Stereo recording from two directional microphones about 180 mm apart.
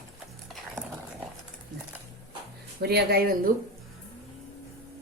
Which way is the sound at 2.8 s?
60° right (ahead or behind).